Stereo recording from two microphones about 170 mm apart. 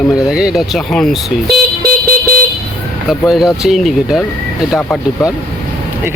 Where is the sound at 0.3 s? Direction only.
5° right (ahead or behind).